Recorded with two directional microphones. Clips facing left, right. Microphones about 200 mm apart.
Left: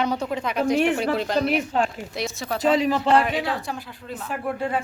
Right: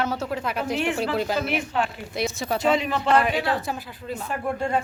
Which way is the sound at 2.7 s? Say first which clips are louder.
Left 3 dB; 35° left (ahead or behind).